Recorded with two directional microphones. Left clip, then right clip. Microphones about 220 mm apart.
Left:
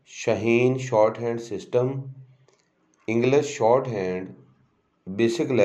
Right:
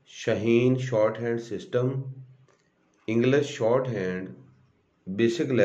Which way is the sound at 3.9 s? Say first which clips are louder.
Left 3 dB; 40° right (ahead or behind).